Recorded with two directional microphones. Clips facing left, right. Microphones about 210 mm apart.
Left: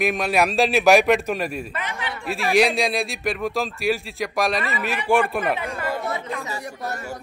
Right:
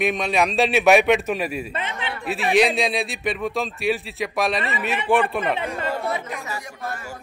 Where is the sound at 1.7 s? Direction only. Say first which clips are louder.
Right 1 dB; 25° right (ahead or behind).